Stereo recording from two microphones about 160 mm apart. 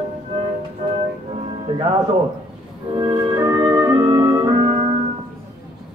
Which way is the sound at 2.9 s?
25° right (ahead or behind).